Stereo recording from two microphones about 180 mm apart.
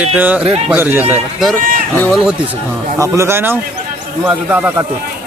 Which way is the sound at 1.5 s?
10° left (ahead or behind).